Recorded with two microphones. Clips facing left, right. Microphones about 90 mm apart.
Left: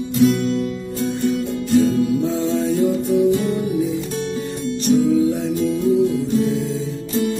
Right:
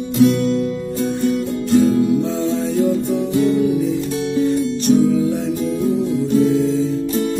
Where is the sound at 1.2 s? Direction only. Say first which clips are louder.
Right 2 dB; centre (ahead or behind).